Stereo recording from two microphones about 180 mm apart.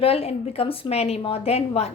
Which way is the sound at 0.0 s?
35° left (ahead or behind).